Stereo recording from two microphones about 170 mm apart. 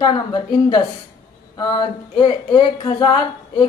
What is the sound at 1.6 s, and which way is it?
Speech, 25° left (ahead or behind).